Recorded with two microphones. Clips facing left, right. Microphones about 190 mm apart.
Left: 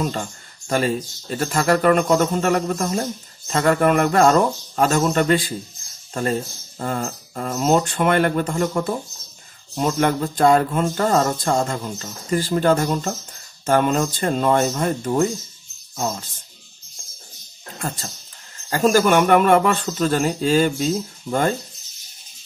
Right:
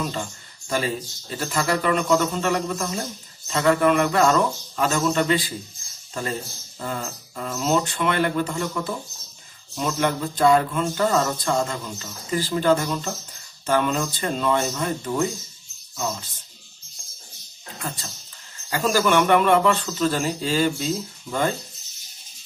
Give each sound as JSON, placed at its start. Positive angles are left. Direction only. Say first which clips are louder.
{"t": 0.7, "sound": "speech", "louder": "left 4 dB", "side_deg": 50}
{"t": 6.8, "sound": "speech", "louder": "left 5 dB", "side_deg": 50}
{"t": 17.7, "sound": "speech", "louder": "left 4 dB", "side_deg": 45}